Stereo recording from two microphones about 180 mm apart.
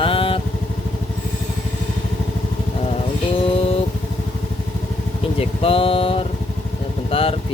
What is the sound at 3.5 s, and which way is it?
Vehicle, 30° left (ahead or behind).